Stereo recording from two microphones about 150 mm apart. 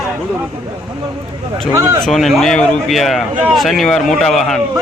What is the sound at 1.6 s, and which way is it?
A man's voice, centre (ahead or behind).